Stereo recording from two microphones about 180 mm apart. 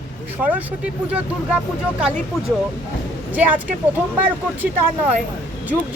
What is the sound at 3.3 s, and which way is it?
Speech, 10° right (ahead or behind).